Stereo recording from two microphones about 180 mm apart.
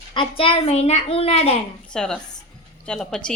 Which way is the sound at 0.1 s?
30° left (ahead or behind).